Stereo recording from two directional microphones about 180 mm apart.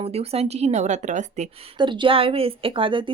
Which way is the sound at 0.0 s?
35° right (ahead or behind).